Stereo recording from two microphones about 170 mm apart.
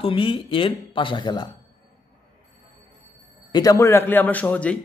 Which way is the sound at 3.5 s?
20° left (ahead or behind).